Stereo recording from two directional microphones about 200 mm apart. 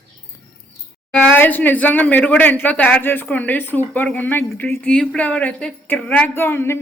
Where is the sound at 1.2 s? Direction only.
5° left (ahead or behind).